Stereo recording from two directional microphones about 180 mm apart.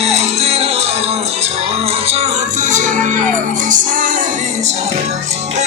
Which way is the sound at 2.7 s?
45° right (ahead or behind).